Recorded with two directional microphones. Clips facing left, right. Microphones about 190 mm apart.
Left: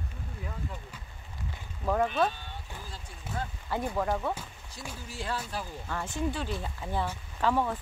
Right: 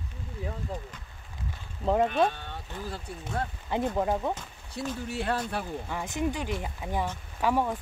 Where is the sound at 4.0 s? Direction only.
20° right (ahead or behind).